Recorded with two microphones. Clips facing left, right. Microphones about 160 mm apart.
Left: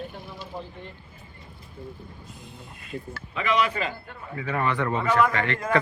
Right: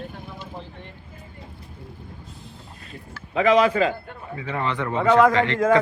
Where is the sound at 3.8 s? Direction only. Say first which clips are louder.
Right 9 dB; 90° right.